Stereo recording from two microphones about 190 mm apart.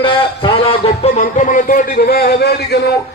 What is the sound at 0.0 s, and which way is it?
A man's voice, 30° left (ahead or behind).